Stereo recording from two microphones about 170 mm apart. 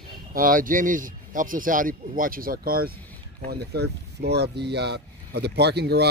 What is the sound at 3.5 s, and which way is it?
Speech, 70° right (ahead or behind).